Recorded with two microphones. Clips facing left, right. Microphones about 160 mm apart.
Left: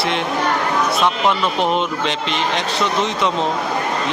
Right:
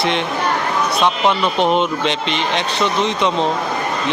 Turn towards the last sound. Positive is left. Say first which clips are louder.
# right 1 dB
turn(degrees=0)  # may be behind; listen again after turning